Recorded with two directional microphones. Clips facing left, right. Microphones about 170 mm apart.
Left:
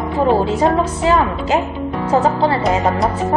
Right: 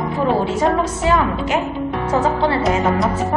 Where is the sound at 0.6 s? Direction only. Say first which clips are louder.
Left 2 dB; 30° left (ahead or behind).